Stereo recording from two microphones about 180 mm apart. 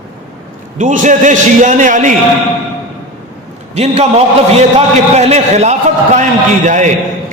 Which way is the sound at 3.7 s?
35° right (ahead or behind).